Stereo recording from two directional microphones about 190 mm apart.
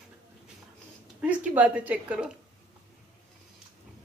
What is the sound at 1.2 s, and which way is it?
A woman's voice, 5° right (ahead or behind).